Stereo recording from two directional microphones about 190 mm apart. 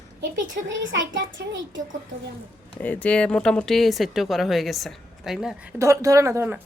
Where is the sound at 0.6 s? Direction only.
75° right (ahead or behind).